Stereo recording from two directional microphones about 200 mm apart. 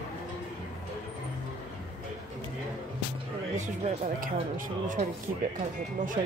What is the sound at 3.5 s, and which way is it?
Speech, 35° right (ahead or behind).